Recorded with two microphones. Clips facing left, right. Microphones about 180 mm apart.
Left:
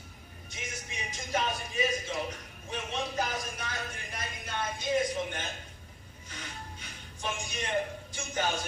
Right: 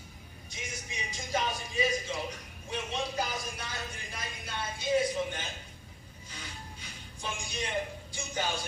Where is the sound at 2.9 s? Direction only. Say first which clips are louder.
Left 2 dB; 10° right (ahead or behind).